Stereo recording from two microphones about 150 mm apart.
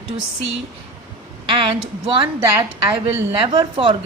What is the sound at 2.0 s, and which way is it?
Speech, 40° right (ahead or behind).